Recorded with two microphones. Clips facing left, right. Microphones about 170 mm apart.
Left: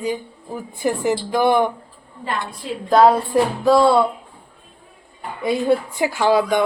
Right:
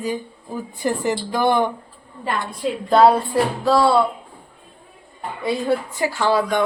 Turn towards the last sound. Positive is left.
turn(degrees=15)  # may be behind; listen again after turning